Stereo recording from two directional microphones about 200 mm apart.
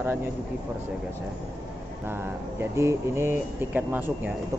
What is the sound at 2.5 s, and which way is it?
Speech, 15° right (ahead or behind).